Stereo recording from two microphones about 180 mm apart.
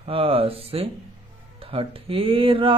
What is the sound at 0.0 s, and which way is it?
Speech, 30° right (ahead or behind).